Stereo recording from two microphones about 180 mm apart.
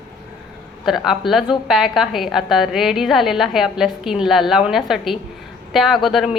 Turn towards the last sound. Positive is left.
turn(degrees=0)  # may be behind; listen again after turning